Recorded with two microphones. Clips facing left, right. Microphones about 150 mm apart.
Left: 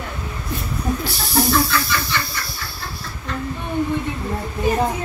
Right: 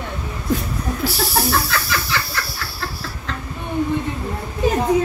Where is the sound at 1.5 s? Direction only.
85° right.